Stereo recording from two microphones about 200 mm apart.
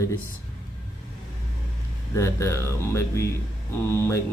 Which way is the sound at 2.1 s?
15° left (ahead or behind).